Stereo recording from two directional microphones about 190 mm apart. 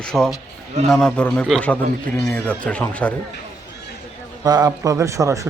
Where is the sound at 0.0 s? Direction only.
5° left (ahead or behind).